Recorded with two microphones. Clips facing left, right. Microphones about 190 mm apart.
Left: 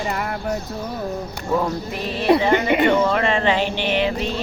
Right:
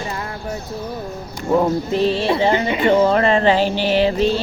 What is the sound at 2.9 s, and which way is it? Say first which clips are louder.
Music: right 4 dB; 35° right (ahead or behind).